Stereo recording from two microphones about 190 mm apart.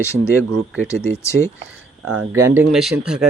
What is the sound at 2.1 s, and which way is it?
Speech, 10° right (ahead or behind).